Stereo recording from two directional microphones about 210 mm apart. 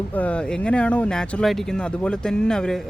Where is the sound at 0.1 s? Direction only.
5° left (ahead or behind).